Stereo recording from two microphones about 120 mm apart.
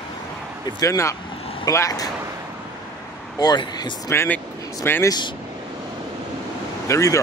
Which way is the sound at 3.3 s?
35° left (ahead or behind).